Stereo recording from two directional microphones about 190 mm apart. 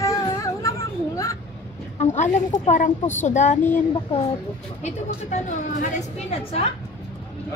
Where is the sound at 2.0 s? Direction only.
40° left (ahead or behind).